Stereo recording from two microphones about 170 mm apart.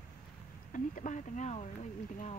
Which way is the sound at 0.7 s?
50° left (ahead or behind).